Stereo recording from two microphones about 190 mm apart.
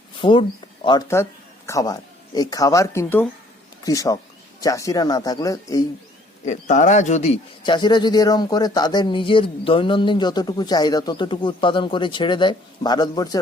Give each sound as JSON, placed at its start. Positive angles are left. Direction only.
{"t": 0.2, "sound": "a man's voice", "side_deg": 25}
{"t": 6.4, "sound": "speech", "side_deg": 40}